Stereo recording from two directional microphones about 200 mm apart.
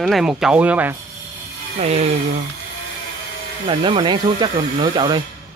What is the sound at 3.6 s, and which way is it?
Speech, 25° right (ahead or behind).